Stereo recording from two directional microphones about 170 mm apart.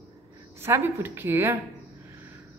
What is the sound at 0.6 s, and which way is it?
A woman's voice, 15° right (ahead or behind).